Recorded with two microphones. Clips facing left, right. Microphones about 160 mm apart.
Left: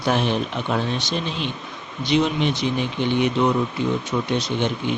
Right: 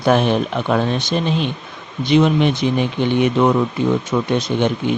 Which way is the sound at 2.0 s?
50° right (ahead or behind).